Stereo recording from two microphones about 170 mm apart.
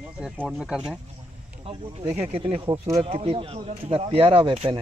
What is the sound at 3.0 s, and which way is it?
Speech, 35° right (ahead or behind).